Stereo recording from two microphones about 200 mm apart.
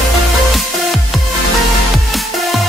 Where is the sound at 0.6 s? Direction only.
Centre (ahead or behind).